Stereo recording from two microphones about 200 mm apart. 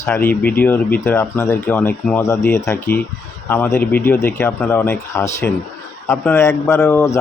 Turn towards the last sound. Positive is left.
turn(degrees=15)  # may be behind; listen again after turning